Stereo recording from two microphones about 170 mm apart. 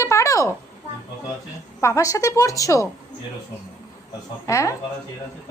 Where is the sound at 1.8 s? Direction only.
15° left (ahead or behind).